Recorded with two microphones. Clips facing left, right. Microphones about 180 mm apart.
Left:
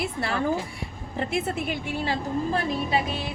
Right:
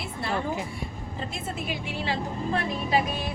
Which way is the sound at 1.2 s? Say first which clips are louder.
Left 8 dB; 70° left (ahead or behind).